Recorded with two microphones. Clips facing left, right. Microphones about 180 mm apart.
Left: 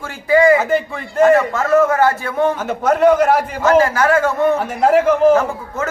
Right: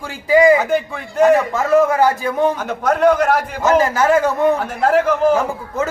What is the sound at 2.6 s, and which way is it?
A man's voice, 5° left (ahead or behind).